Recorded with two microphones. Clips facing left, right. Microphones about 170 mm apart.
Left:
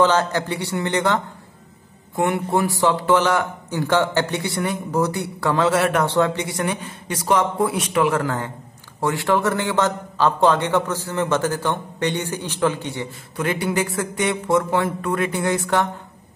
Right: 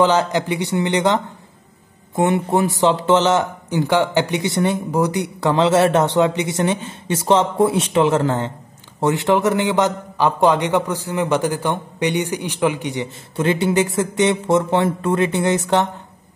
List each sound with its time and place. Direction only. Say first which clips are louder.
0.0 s a man's voice: right 2 dB; 15° right (ahead or behind)